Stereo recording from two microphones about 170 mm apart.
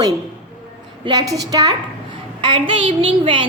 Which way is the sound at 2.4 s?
30° right (ahead or behind).